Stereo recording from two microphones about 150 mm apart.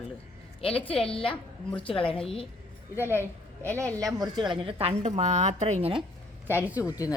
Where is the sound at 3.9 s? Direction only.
25° right (ahead or behind).